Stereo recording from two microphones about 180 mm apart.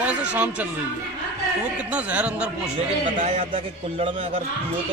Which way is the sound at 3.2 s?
30° right (ahead or behind).